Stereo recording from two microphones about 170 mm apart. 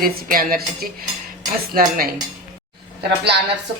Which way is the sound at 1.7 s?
60° right (ahead or behind).